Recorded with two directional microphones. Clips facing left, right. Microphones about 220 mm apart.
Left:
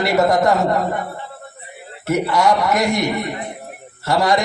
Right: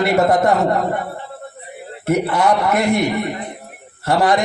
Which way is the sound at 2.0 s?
55° right (ahead or behind).